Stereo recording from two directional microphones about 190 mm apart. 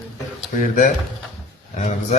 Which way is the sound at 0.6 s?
40° left (ahead or behind).